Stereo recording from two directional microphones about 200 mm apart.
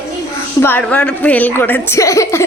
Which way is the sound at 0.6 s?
10° left (ahead or behind).